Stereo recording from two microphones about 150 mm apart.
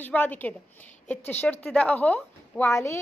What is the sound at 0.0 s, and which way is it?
A woman's voice, 10° left (ahead or behind).